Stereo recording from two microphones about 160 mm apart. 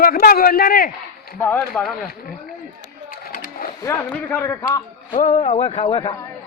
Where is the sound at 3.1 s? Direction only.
60° left (ahead or behind).